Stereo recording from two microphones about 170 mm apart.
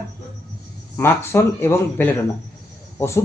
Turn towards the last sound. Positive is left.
turn(degrees=15)  # may be behind; listen again after turning